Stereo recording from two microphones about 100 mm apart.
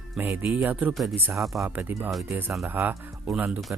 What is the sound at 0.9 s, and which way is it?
Speech, centre (ahead or behind).